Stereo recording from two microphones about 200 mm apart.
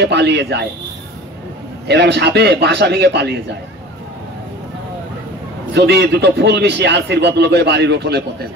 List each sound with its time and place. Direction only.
0.0 s a man's voice: 55° right (ahead or behind)
1.9 s a man's voice: 55° right (ahead or behind)
5.7 s a man's voice: 55° right (ahead or behind)